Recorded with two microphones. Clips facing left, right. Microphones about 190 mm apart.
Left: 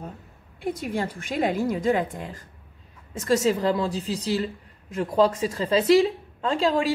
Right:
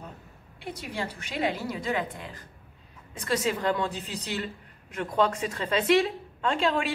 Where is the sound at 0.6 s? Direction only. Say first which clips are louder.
Left 7 dB; 45° left (ahead or behind).